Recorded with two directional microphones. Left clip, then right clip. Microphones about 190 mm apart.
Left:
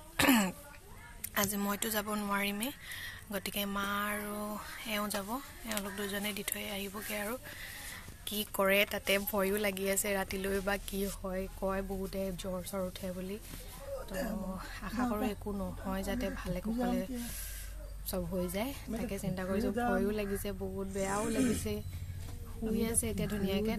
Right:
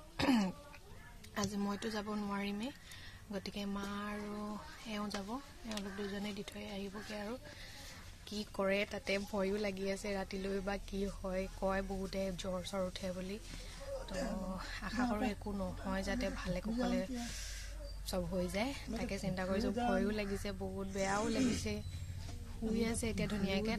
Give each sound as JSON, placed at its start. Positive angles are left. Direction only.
{"t": 0.2, "sound": "cough", "side_deg": 0}
{"t": 1.3, "sound": "speech", "side_deg": 0}
{"t": 14.5, "sound": "speech", "side_deg": 0}
{"t": 22.8, "sound": "a woman's voice", "side_deg": -5}